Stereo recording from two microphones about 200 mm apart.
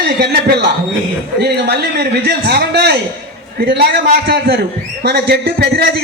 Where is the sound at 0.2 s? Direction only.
55° right (ahead or behind).